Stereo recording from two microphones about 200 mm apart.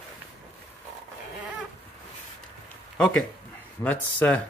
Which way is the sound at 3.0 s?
Centre (ahead or behind).